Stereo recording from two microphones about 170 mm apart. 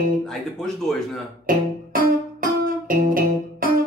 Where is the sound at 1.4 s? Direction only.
55° right (ahead or behind).